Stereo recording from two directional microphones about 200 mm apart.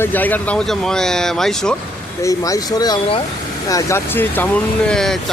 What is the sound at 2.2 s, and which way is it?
Speech, 15° left (ahead or behind).